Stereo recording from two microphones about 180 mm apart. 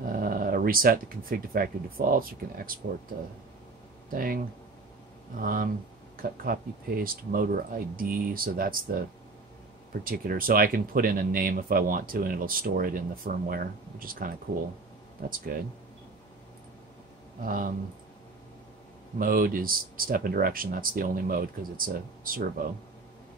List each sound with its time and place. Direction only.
0.1 s speech: 50° right (ahead or behind)
4.1 s speech: 55° right (ahead or behind)
5.4 s speech: 50° right (ahead or behind)
10.0 s speech: 50° right (ahead or behind)
15.5 s speech: 55° right (ahead or behind)
17.5 s speech: 50° right (ahead or behind)
19.1 s speech: 50° right (ahead or behind)